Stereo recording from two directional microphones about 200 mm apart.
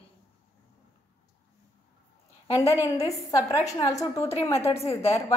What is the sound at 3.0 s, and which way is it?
A woman's voice, 15° left (ahead or behind).